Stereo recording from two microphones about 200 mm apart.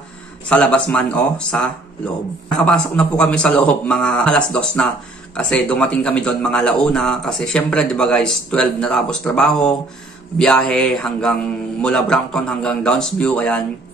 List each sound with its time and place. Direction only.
0.5 s a man's voice: 5° left (ahead or behind)